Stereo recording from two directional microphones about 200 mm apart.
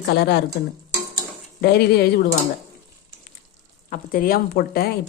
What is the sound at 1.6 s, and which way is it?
Speech, 50° left (ahead or behind).